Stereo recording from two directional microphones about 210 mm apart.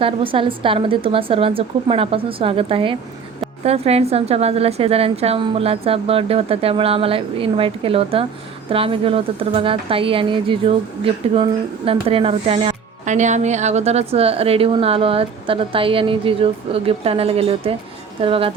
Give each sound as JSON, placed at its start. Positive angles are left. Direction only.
{"t": 0.0, "sound": "speech", "side_deg": -25}